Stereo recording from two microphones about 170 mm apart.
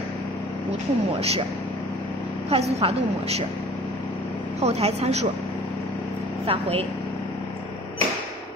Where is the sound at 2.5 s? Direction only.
35° right (ahead or behind).